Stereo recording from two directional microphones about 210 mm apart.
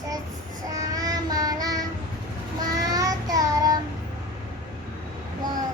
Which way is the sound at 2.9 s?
15° right (ahead or behind).